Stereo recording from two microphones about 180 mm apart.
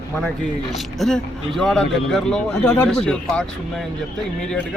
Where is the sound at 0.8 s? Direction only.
Centre (ahead or behind).